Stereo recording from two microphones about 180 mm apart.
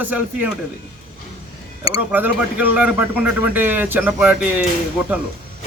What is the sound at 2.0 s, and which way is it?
Speech, 10° right (ahead or behind).